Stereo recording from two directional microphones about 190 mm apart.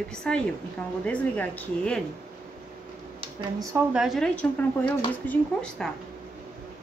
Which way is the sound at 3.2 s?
25° right (ahead or behind).